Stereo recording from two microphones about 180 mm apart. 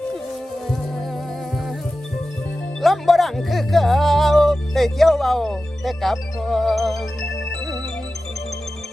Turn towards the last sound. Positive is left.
turn(degrees=0)  # may be behind; listen again after turning